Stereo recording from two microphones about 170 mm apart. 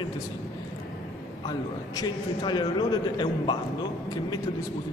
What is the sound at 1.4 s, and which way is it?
A man's voice, 25° left (ahead or behind).